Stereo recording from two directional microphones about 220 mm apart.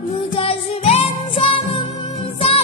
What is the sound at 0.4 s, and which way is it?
Music, 25° left (ahead or behind).